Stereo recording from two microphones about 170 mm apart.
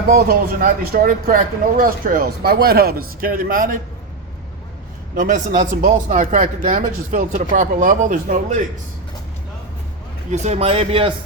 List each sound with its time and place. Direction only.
0.1 s speech: 60° right (ahead or behind)
5.1 s speech: 50° right (ahead or behind)
10.3 s a man's voice: 40° right (ahead or behind)